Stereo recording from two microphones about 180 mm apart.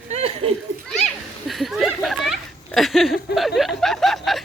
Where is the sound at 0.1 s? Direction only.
35° right (ahead or behind).